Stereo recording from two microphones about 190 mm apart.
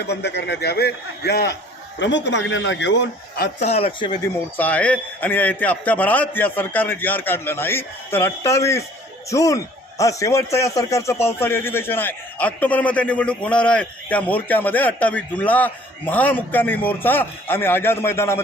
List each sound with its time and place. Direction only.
0.0 s a man's voice: 60° left (ahead or behind)
2.0 s speech: 70° left (ahead or behind)
3.6 s speech: 35° left (ahead or behind)
4.5 s a man's voice: 10° left (ahead or behind)